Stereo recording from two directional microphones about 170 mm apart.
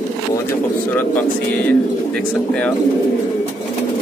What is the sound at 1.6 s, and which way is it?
Speech, 5° left (ahead or behind).